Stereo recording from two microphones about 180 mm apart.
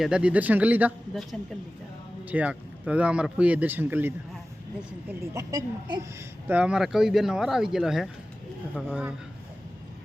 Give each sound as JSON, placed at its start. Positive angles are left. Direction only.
{"t": 0.0, "sound": "speech", "side_deg": -5}
{"t": 6.5, "sound": "speech", "side_deg": -5}